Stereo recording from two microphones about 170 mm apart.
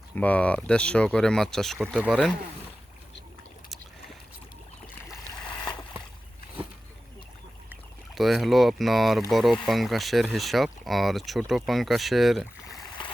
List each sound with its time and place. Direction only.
0.2 s speech: 10° left (ahead or behind)
5.5 s a sound: 25° left (ahead or behind)
7.7 s speech: centre (ahead or behind)
13.0 s boat: 30° left (ahead or behind)